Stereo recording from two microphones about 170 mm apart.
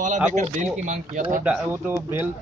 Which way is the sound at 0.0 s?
45° right (ahead or behind).